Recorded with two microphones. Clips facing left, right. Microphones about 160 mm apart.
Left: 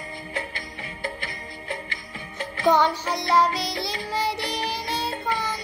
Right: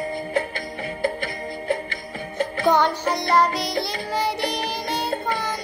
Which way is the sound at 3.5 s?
50° right (ahead or behind).